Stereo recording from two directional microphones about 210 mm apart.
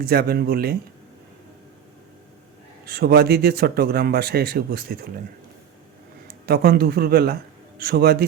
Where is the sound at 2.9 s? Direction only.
45° right (ahead or behind).